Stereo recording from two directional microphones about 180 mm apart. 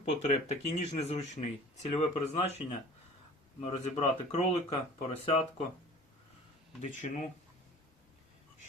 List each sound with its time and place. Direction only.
0.2 s speech: 40° left (ahead or behind)
6.8 s speech: 45° left (ahead or behind)